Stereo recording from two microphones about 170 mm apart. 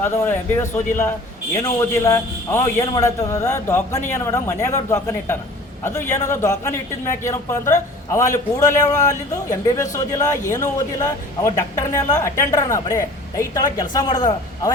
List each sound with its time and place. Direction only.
0.0 s a man's voice: 15° left (ahead or behind)